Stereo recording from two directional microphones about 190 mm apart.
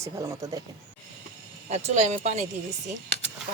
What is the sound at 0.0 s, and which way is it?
Speech, 15° right (ahead or behind).